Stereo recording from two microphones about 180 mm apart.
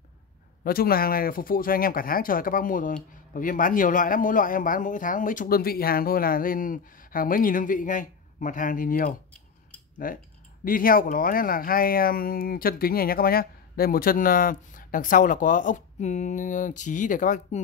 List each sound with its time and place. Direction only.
0.7 s speech: 55° left (ahead or behind)